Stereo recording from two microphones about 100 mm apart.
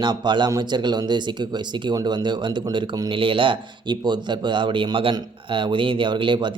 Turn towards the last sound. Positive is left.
turn(degrees=-55)  # may be behind; listen again after turning